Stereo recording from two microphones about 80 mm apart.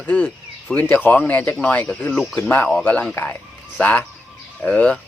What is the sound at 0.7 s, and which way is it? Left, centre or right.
Speech, left.